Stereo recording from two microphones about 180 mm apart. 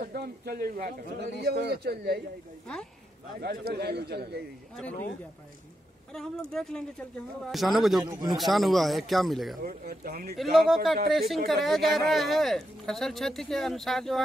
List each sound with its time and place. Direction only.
0.0 s a man's voice: 55° right (ahead or behind)
3.3 s a man's voice: 60° right (ahead or behind)
6.5 s speech: 5° left (ahead or behind)
8.0 s a man's voice: 20° right (ahead or behind)
8.4 s speech: centre (ahead or behind)
9.6 s a man's voice: 55° right (ahead or behind)
10.3 s speech: centre (ahead or behind)